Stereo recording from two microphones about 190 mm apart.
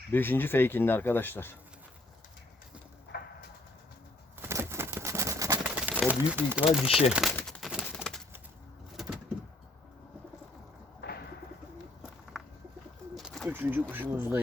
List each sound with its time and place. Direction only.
0.1 s speech: 10° left (ahead or behind)
3.1 s bird: 50° left (ahead or behind)
4.4 s a sound: 15° right (ahead or behind)
5.9 s speech: 5° right (ahead or behind)
7.3 s pigeon: 5° left (ahead or behind)
9.0 s bird: centre (ahead or behind)
11.0 s bird: 60° left (ahead or behind)
13.1 s bird: centre (ahead or behind)
13.5 s speech: 10° right (ahead or behind)